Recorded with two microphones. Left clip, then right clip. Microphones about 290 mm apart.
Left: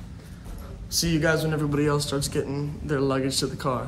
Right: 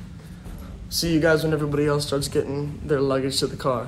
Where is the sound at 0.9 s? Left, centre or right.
Centre.